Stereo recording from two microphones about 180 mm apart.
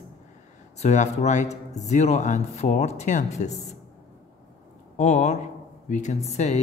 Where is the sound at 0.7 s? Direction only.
40° left (ahead or behind).